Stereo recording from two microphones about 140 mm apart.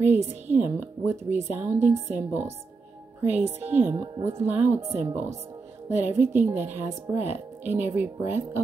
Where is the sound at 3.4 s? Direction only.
50° right (ahead or behind).